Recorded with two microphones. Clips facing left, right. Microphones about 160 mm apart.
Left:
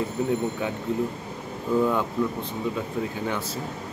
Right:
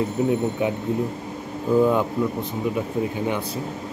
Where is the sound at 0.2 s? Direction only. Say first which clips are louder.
Right 4 dB; 20° right (ahead or behind).